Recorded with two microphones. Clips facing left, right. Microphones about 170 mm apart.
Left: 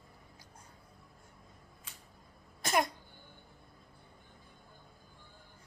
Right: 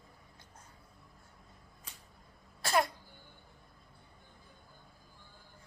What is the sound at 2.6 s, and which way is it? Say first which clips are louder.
Throat clearing: right 1 dB; 20° left (ahead or behind).